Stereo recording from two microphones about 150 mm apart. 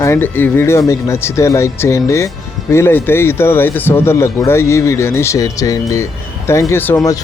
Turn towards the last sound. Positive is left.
turn(degrees=20)  # may be behind; listen again after turning